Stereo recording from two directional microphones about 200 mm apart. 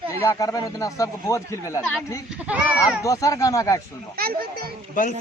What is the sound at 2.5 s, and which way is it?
Speech, 5° right (ahead or behind).